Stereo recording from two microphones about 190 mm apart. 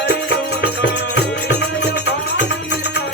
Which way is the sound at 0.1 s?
65° left (ahead or behind).